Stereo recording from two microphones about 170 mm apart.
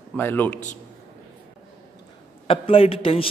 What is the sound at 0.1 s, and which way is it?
Speech, 10° left (ahead or behind).